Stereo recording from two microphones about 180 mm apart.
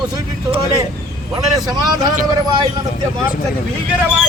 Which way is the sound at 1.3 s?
20° right (ahead or behind).